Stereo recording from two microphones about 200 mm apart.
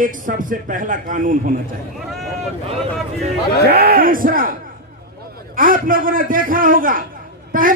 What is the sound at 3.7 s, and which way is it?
A man's voice, 50° right (ahead or behind).